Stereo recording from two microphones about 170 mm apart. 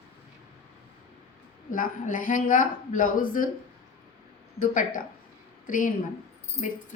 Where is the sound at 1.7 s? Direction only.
50° left (ahead or behind).